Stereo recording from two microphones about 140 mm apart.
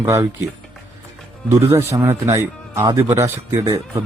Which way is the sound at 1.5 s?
20° right (ahead or behind).